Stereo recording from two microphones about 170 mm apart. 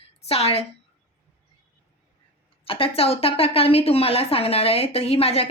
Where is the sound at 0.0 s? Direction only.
35° left (ahead or behind).